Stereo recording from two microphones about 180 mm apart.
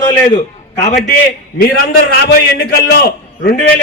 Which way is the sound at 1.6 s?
60° left (ahead or behind).